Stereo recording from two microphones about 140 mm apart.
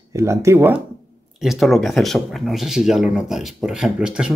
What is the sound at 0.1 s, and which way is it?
Speech, 20° right (ahead or behind).